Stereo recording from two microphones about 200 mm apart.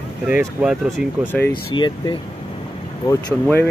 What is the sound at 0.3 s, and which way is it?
Speech, 5° right (ahead or behind).